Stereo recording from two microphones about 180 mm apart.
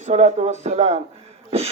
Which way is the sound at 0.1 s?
40° right (ahead or behind).